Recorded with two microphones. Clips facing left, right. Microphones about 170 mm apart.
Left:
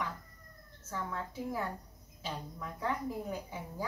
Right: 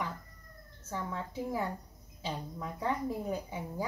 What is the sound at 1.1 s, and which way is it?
A woman's voice, 20° right (ahead or behind).